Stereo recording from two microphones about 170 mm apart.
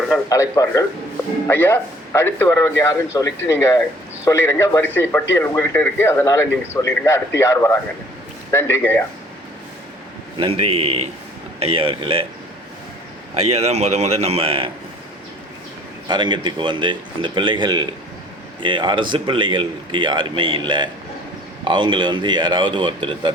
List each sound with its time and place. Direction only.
0.3 s a man's voice: 20° left (ahead or behind)
10.3 s a man's voice: 35° right (ahead or behind)
13.3 s a man's voice: 35° right (ahead or behind)
16.0 s a man's voice: 25° right (ahead or behind)